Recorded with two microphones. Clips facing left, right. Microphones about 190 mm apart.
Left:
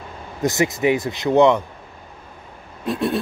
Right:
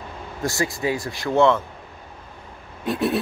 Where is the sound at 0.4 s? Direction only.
20° left (ahead or behind).